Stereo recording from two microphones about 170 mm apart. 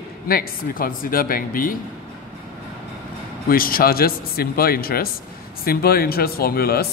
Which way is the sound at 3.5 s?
60° left (ahead or behind).